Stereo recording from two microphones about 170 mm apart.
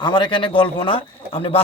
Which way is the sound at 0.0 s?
25° left (ahead or behind).